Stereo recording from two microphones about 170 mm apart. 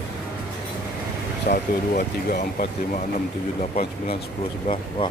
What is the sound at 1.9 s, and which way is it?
Speech, 65° left (ahead or behind).